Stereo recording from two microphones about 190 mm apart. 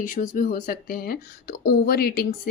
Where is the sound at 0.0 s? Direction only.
45° left (ahead or behind).